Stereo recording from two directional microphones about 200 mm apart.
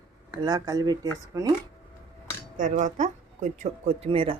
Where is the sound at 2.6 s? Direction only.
40° right (ahead or behind).